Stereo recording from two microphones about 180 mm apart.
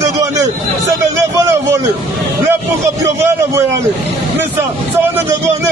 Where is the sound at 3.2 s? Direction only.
15° right (ahead or behind).